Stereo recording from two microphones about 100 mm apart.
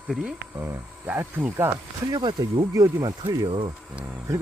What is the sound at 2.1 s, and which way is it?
Speech, 40° right (ahead or behind).